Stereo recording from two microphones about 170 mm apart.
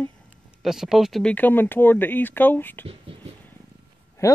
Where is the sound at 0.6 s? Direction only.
5° right (ahead or behind).